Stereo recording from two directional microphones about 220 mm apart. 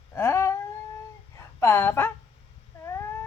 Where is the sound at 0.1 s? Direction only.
10° left (ahead or behind).